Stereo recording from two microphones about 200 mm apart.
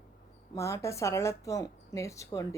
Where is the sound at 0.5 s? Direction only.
15° left (ahead or behind).